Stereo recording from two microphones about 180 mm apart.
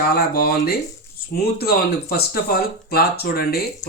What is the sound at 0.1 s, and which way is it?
Speech, 60° left (ahead or behind).